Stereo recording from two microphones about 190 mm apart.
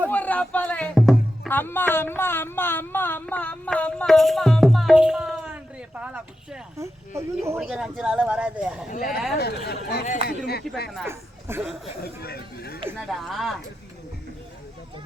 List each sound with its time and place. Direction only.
0.1 s speech: 10° left (ahead or behind); by 7.6 s 15° right (ahead or behind)
7.6 s speech: 5° right (ahead or behind)
8.9 s speech: 45° left (ahead or behind)
9.4 s speech: 55° left (ahead or behind)
11.0 s a man's voice: 10° right (ahead or behind)
13.1 s speech: centre (ahead or behind)